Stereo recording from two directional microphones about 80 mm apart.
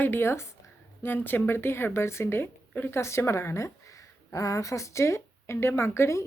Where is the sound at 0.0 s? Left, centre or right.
Left.